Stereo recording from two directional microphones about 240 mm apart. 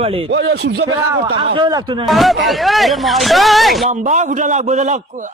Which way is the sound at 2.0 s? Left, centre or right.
Centre.